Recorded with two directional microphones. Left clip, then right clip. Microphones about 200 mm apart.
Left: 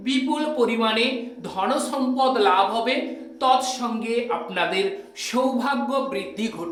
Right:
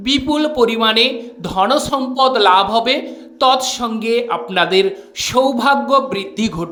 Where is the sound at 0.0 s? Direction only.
40° right (ahead or behind).